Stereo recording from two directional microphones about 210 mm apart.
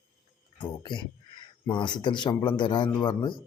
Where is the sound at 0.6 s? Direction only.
20° left (ahead or behind).